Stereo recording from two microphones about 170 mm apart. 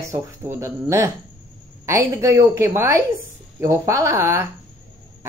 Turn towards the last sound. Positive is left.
turn(degrees=-15)  # may be behind; listen again after turning